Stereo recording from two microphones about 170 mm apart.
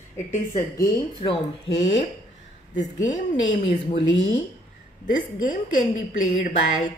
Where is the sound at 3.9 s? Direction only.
40° left (ahead or behind).